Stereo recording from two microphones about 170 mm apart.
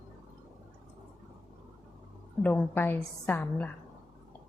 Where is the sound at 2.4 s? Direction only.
10° left (ahead or behind).